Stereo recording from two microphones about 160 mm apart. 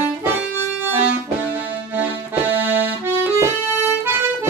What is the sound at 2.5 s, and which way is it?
Accordion, 10° right (ahead or behind).